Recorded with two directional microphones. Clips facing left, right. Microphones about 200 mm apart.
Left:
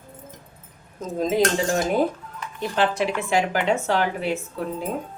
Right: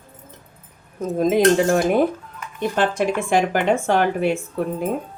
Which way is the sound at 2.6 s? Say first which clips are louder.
Right 2 dB; 50° right (ahead or behind).